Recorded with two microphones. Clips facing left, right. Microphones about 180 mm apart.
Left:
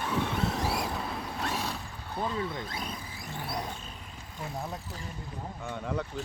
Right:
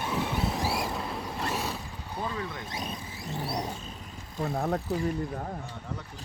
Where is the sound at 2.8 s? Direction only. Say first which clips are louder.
Right 2 dB; 25° right (ahead or behind).